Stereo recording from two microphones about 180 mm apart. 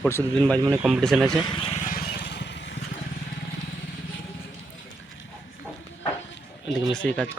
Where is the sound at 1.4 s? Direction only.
30° left (ahead or behind).